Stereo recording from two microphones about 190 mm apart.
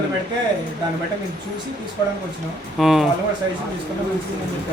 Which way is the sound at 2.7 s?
Centre (ahead or behind).